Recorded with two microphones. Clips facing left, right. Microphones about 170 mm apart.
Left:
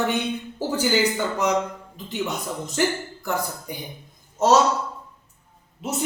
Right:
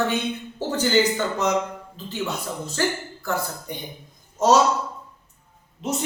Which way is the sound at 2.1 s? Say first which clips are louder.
Left 1 dB; 15° left (ahead or behind).